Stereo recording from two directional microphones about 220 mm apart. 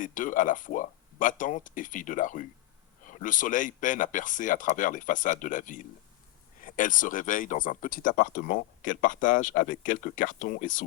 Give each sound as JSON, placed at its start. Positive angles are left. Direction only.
{"t": 0.0, "sound": "speech", "side_deg": 35}